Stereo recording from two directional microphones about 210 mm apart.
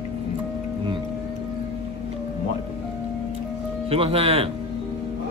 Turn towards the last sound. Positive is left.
turn(degrees=-30)  # may be behind; listen again after turning